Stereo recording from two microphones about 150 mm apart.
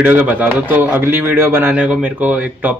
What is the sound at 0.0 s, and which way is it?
Speech, 10° right (ahead or behind).